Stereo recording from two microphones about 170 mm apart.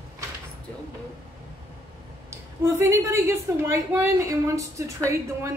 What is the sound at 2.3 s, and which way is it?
A woman's voice, 20° right (ahead or behind).